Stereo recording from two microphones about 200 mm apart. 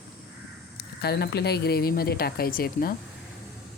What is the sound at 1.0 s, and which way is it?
Speech, 55° left (ahead or behind).